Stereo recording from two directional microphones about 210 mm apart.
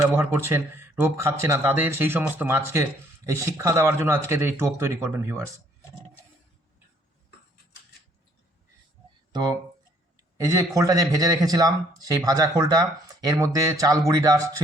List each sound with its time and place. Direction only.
0.2 s speech: 10° right (ahead or behind)
9.3 s speech: 20° right (ahead or behind)